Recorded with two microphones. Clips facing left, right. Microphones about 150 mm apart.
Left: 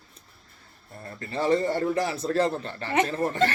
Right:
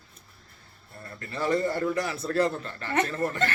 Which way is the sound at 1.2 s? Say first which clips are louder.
Left 3 dB; 30° left (ahead or behind).